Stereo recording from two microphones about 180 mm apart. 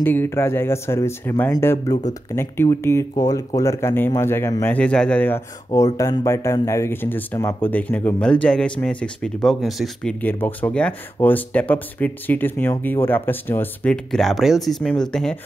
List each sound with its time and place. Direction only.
0.0 s speech: 10° left (ahead or behind)